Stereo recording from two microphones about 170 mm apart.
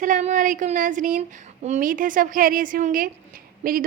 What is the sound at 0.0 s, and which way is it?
A woman's voice, 50° right (ahead or behind).